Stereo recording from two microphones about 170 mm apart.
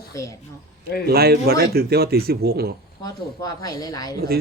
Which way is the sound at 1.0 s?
70° right (ahead or behind).